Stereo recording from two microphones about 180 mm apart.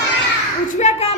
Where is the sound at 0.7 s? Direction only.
40° left (ahead or behind).